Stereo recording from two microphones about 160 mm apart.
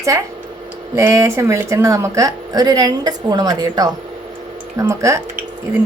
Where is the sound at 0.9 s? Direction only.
20° right (ahead or behind).